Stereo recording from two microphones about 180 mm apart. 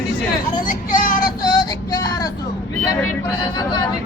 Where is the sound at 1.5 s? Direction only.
25° left (ahead or behind).